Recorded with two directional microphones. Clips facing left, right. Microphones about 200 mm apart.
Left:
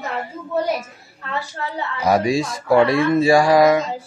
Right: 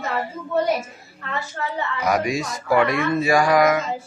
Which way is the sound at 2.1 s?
30° left (ahead or behind).